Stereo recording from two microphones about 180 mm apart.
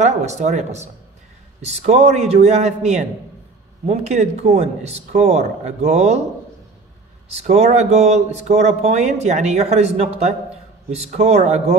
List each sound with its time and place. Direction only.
0.0 s a man's voice: 40° right (ahead or behind)
7.2 s a man's voice: 35° right (ahead or behind)